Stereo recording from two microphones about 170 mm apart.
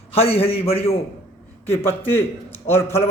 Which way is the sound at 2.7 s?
35° left (ahead or behind).